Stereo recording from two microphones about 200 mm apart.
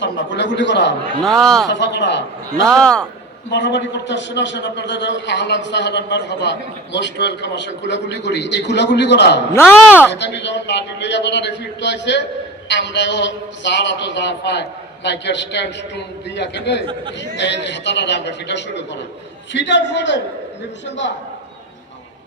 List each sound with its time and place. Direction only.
0.0 s a man's voice: 65° left (ahead or behind)
1.2 s a man's voice: centre (ahead or behind)
1.6 s a man's voice: 60° left (ahead or behind)
2.7 s a man's voice: 5° left (ahead or behind)
3.5 s a man's voice: 60° left (ahead or behind)
9.5 s speech: 10° left (ahead or behind)
10.1 s a man's voice: 60° left (ahead or behind)